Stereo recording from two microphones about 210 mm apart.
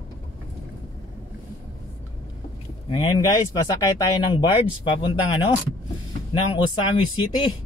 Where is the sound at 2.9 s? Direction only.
20° left (ahead or behind).